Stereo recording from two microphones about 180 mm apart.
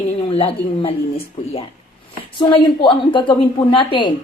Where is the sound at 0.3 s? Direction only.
30° left (ahead or behind).